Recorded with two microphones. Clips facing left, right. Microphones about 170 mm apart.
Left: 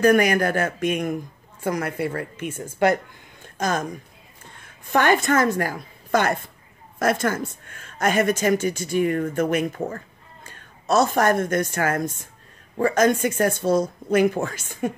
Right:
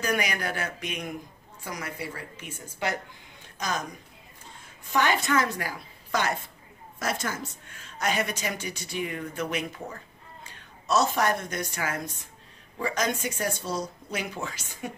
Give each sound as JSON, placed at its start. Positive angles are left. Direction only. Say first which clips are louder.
{"t": 0.0, "sound": "speech", "louder": "left 11 dB", "side_deg": 50}
{"t": 3.4, "sound": "a sound", "louder": "left 7 dB", "side_deg": 50}
{"t": 4.6, "sound": "a woman's voice", "louder": "left 5 dB", "side_deg": 55}